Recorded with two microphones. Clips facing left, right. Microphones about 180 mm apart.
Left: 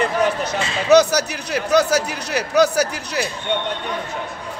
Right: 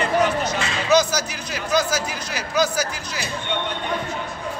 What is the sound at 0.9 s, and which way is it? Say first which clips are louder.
A man's voice: left 6 dB; 65° left (ahead or behind).